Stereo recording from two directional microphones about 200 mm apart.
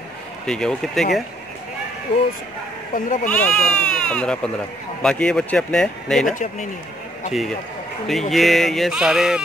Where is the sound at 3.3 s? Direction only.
10° left (ahead or behind).